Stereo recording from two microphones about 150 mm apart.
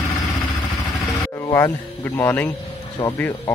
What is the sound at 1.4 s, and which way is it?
Speech, 15° left (ahead or behind).